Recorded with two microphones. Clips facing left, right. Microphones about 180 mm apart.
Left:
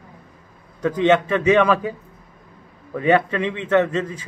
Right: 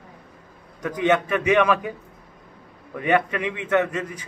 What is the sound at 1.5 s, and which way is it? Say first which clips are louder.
Speech: left 3 dB; 15° right (ahead or behind).